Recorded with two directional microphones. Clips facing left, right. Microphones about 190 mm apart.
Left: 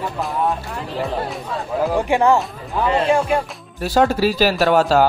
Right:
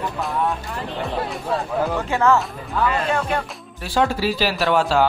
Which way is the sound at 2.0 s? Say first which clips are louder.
Left 3 dB; 15° left (ahead or behind).